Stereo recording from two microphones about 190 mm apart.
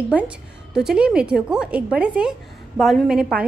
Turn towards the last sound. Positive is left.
turn(degrees=-5)  # may be behind; listen again after turning